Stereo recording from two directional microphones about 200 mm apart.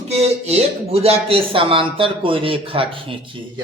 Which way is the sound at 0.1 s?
30° right (ahead or behind).